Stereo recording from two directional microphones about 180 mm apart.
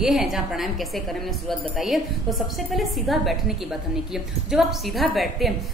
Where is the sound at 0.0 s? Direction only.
Centre (ahead or behind).